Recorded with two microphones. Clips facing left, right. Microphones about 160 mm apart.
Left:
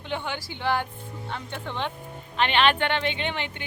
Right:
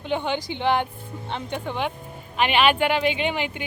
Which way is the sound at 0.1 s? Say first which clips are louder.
Right 6 dB; 20° right (ahead or behind).